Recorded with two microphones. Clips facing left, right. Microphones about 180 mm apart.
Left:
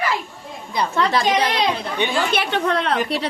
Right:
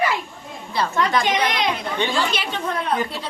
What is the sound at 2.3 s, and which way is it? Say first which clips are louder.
A woman's voice: left 5 dB; 65° left (ahead or behind).